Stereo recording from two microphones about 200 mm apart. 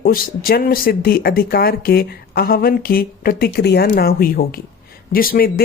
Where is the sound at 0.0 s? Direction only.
45° left (ahead or behind).